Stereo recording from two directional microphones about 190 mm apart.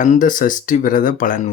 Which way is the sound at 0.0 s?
40° left (ahead or behind).